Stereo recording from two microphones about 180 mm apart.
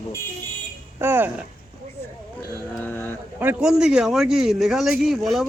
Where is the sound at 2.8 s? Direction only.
10° left (ahead or behind).